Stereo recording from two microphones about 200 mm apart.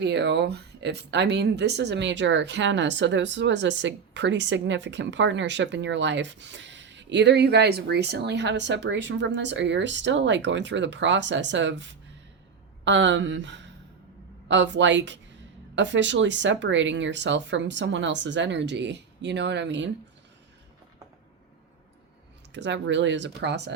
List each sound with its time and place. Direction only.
0.0 s speech: 60° right (ahead or behind)
22.5 s speech: 65° right (ahead or behind)